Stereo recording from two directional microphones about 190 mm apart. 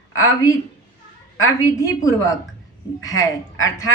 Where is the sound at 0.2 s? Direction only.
15° left (ahead or behind).